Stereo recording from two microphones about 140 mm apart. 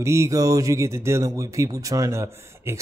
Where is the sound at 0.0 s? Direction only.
20° right (ahead or behind).